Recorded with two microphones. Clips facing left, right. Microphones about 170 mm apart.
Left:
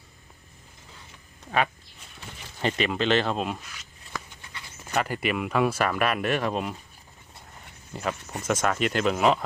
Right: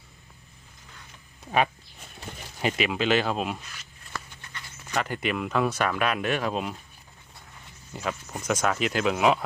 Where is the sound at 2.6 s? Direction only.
5° right (ahead or behind).